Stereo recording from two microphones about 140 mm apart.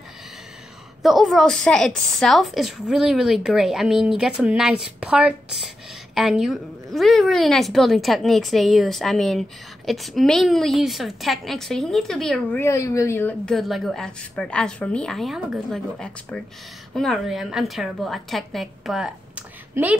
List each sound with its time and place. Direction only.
1.0 s a woman's voice: centre (ahead or behind)
12.5 s a woman's voice: 20° left (ahead or behind)
13.5 s a woman's voice: centre (ahead or behind)